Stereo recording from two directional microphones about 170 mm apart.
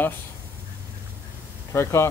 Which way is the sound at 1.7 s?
15° left (ahead or behind).